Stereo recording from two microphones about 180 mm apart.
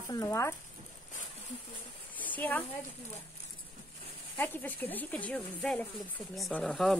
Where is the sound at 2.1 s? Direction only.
10° left (ahead or behind).